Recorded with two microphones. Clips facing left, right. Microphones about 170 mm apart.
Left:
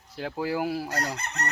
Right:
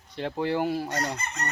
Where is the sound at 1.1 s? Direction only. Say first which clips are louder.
Right 1 dB; 70° left (ahead or behind).